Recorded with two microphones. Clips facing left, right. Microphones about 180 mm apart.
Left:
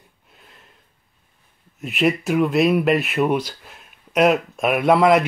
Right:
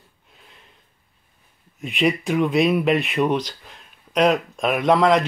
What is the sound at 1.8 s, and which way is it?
Speech, 5° left (ahead or behind).